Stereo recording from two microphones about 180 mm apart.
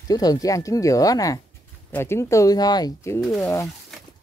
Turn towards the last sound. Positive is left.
turn(degrees=15)  # may be behind; listen again after turning